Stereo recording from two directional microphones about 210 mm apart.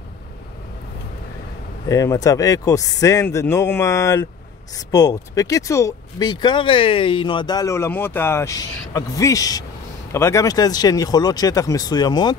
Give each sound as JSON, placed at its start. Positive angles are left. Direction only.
{"t": 1.9, "sound": "speech", "side_deg": 15}